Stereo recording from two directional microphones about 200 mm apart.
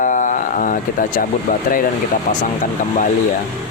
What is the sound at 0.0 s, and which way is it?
Vehicle, 40° left (ahead or behind).